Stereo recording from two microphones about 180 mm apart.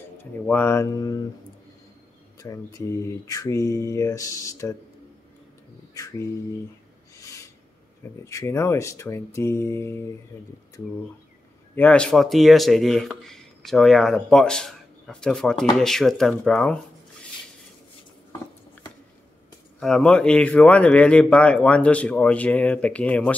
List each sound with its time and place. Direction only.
0.2 s speech: 10° left (ahead or behind)
2.3 s speech: 20° left (ahead or behind)
5.9 s a sound: 20° left (ahead or behind)
8.0 s speech: 15° left (ahead or behind)
11.7 s speech: 10° left (ahead or behind)
19.8 s speech: 5° left (ahead or behind)